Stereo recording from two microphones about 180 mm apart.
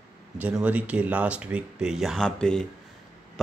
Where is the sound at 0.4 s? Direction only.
10° right (ahead or behind).